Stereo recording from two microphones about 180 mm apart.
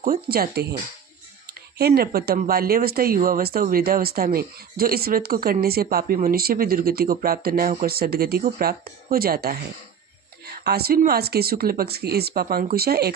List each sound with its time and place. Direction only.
0.0 s speech: 55° right (ahead or behind)
2.0 s speech: 60° right (ahead or behind)